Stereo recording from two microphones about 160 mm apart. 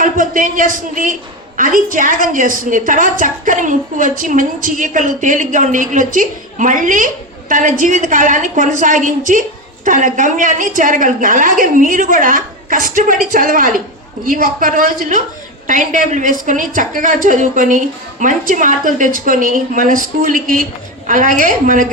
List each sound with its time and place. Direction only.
0.0 s a woman's voice: 60° right (ahead or behind)